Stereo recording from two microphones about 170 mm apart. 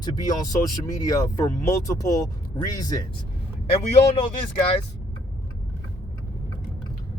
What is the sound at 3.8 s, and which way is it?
Speech, 35° left (ahead or behind).